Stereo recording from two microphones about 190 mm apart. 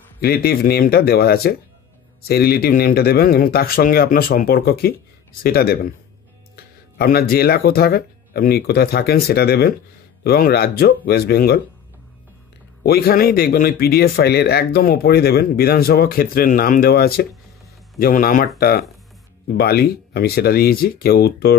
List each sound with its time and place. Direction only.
0.2 s speech: 55° left (ahead or behind)
12.8 s speech: 55° left (ahead or behind)